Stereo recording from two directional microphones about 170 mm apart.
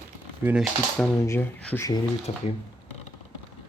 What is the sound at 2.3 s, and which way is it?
Speech, 35° left (ahead or behind).